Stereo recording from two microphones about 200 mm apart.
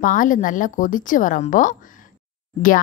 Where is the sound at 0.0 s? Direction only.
40° left (ahead or behind).